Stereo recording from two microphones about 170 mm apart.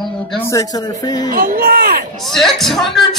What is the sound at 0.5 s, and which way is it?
Speech, 20° left (ahead or behind).